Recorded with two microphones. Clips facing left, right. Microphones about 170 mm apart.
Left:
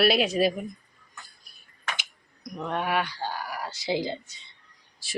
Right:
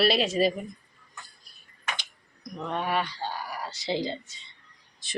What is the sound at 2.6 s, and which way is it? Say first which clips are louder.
Speech: left 1 dB; 5° left (ahead or behind).